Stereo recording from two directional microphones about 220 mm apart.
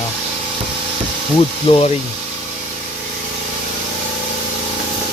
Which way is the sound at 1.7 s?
20° left (ahead or behind).